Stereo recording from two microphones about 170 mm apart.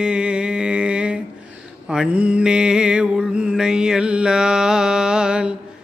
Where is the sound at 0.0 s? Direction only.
5° right (ahead or behind).